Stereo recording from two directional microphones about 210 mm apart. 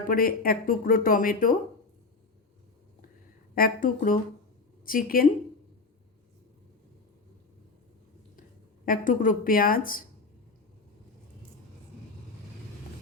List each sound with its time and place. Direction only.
0.1 s speech: 45° left (ahead or behind)
3.5 s a woman's voice: 40° left (ahead or behind)
8.9 s a woman's voice: 40° left (ahead or behind)